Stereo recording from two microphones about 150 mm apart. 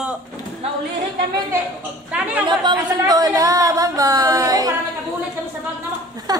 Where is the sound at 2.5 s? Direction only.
30° right (ahead or behind).